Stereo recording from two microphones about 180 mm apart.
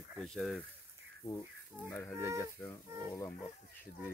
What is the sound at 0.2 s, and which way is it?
Speech, centre (ahead or behind).